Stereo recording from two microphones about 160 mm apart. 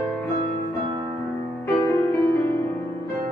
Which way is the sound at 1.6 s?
15° left (ahead or behind).